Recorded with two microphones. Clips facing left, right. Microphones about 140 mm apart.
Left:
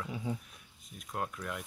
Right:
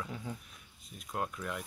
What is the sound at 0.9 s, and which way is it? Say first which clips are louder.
Speech: right 1 dB; centre (ahead or behind).